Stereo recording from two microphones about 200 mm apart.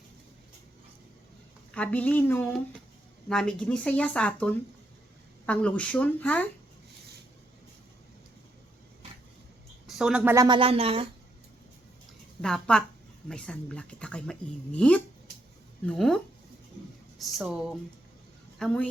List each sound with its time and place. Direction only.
1.7 s a woman's voice: 5° left (ahead or behind)
9.8 s a woman's voice: centre (ahead or behind); by 11.1 s 30° right (ahead or behind)
12.4 s speech: 5° left (ahead or behind)
17.3 s speech: 5° right (ahead or behind)